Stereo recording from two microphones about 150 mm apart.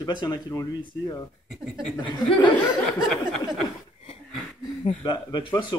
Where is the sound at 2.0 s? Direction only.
30° left (ahead or behind).